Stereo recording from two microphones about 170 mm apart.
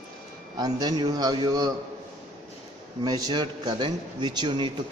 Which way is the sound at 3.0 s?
20° right (ahead or behind).